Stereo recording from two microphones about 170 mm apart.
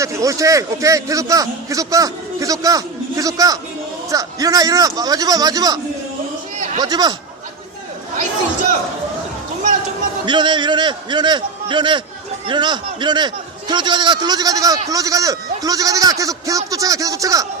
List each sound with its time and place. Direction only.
0.0 s a man's voice: 20° right (ahead or behind)
6.8 s a man's voice: 25° right (ahead or behind)
10.2 s a man's voice: 25° right (ahead or behind)